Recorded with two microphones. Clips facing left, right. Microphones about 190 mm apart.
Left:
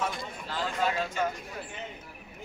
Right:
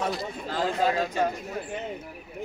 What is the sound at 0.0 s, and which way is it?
A man's voice, 35° right (ahead or behind).